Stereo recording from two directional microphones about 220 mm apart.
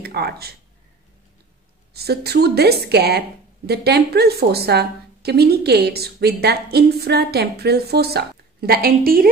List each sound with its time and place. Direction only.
0.0 s speech: 45° right (ahead or behind)
2.0 s a woman's voice: 45° right (ahead or behind)